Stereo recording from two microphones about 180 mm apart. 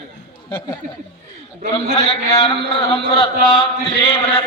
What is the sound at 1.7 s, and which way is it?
Speech, 25° left (ahead or behind).